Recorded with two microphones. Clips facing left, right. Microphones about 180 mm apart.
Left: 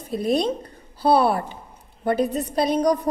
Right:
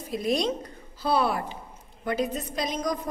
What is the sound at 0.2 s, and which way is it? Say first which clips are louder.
A woman's voice: left 4 dB; 30° left (ahead or behind).